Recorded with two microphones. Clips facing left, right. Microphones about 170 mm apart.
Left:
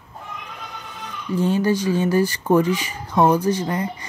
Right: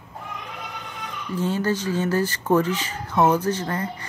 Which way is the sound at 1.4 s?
15° left (ahead or behind).